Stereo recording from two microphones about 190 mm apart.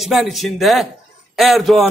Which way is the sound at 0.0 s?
Centre (ahead or behind).